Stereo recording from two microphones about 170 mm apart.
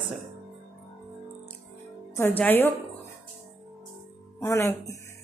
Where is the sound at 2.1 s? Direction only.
15° left (ahead or behind).